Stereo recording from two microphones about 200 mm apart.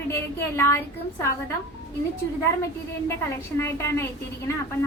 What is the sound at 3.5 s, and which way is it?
Speech, 15° left (ahead or behind).